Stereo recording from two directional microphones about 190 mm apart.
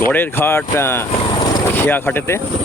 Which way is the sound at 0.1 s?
10° left (ahead or behind).